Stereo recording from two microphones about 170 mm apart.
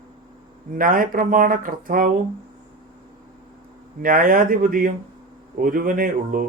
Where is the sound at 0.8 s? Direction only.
55° right (ahead or behind).